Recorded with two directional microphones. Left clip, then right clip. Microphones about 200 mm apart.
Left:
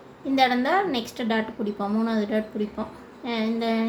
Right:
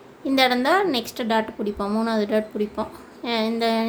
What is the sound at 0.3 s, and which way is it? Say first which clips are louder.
A woman's voice: right 2 dB; 20° right (ahead or behind).